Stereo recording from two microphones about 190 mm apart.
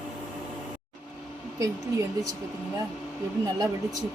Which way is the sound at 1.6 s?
15° right (ahead or behind).